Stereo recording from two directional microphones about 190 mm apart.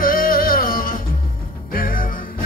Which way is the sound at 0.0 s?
50° left (ahead or behind).